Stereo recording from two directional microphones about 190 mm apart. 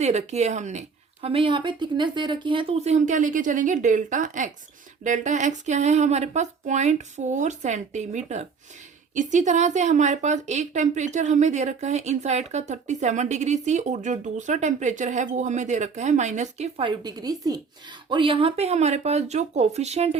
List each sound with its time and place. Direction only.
0.0 s a woman's voice: 35° right (ahead or behind)